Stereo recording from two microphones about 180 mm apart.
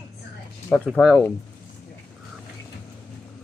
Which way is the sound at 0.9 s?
Centre (ahead or behind).